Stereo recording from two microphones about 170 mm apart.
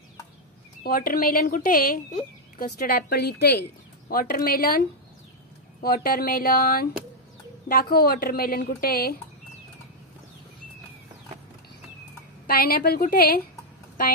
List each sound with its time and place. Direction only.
0.8 s a woman's voice: 60° left (ahead or behind)
4.1 s speech: 60° left (ahead or behind)
12.4 s speech: 60° left (ahead or behind)